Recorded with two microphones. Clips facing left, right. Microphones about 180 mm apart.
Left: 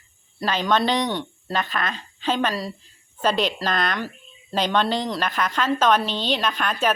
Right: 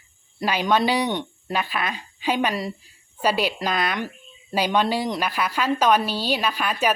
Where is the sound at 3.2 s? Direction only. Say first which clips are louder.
Even; 10° right (ahead or behind).